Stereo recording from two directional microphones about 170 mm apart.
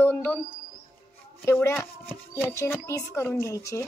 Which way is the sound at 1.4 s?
15° left (ahead or behind).